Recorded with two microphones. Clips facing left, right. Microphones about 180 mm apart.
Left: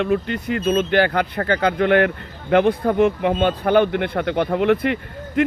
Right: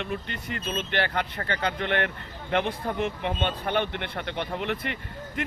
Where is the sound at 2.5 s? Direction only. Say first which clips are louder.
Left 11 dB; 60° left (ahead or behind).